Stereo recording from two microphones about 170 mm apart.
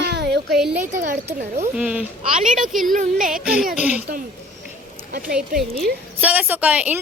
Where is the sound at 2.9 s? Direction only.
50° right (ahead or behind).